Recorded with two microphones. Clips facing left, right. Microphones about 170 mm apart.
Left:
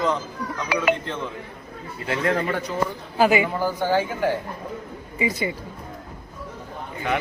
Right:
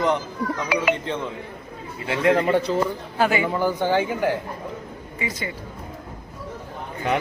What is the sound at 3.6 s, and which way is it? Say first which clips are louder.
Speech: right 1 dB; 15° right (ahead or behind).